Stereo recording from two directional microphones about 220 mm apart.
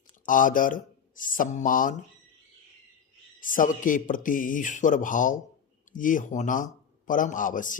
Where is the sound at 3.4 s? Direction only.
40° left (ahead or behind).